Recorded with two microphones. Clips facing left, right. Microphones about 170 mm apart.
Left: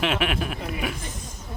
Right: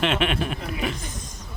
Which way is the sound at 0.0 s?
5° left (ahead or behind).